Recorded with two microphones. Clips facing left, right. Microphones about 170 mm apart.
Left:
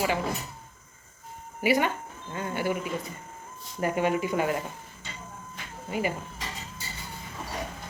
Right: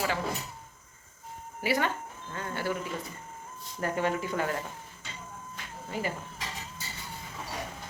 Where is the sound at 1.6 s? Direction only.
15° left (ahead or behind).